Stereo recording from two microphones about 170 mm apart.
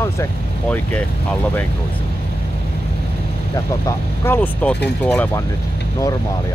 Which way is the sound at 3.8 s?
10° left (ahead or behind).